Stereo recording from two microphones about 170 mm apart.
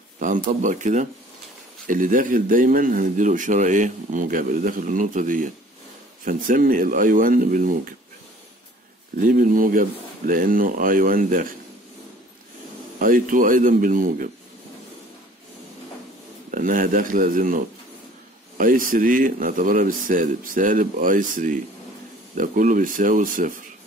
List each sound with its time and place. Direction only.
0.2 s speech: 45° right (ahead or behind)
9.2 s speech: 50° right (ahead or behind)
13.0 s speech: 55° right (ahead or behind)
16.4 s speech: 50° right (ahead or behind)